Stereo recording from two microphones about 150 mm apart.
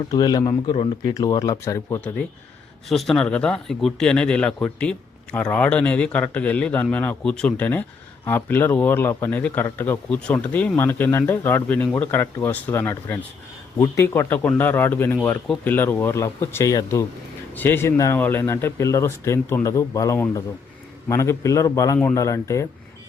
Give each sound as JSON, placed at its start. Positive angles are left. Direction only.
{"t": 0.1, "sound": "speech", "side_deg": 25}
{"t": 2.9, "sound": "speech", "side_deg": 0}